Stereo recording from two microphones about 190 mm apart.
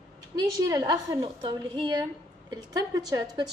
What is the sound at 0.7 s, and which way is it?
Speech, 20° right (ahead or behind).